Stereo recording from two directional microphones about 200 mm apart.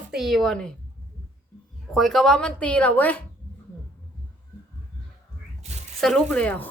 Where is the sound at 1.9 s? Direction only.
Centre (ahead or behind).